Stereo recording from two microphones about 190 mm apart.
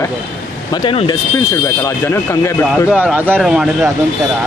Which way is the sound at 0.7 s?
25° left (ahead or behind).